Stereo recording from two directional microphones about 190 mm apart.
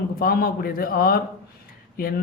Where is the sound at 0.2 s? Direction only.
50° left (ahead or behind).